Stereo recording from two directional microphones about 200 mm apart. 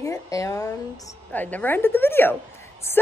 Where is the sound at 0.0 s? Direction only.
15° left (ahead or behind).